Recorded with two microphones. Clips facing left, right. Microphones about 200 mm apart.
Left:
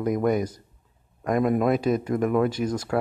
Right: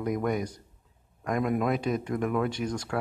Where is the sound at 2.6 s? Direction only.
5° left (ahead or behind).